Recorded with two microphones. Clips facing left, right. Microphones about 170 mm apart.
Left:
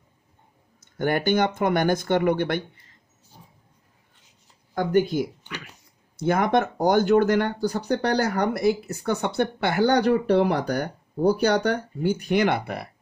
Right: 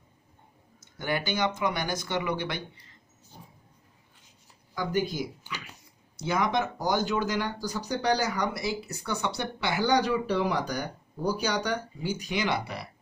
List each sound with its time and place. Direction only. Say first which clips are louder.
0.9 s speech: left 8 dB; 50° left (ahead or behind)
4.7 s speech: left 7 dB; 55° left (ahead or behind)